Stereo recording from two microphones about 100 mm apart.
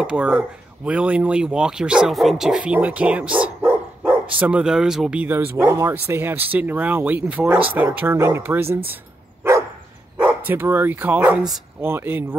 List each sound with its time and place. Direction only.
0.0 s speech: 10° right (ahead or behind)
5.2 s speech: 20° right (ahead or behind)
9.4 s dog: 30° right (ahead or behind)
10.1 s speech: 15° right (ahead or behind)
11.2 s speech: centre (ahead or behind)
11.8 s speech: 20° right (ahead or behind)